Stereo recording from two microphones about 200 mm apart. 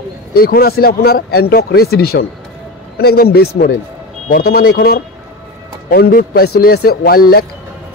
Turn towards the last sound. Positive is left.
turn(degrees=50)  # may be behind; listen again after turning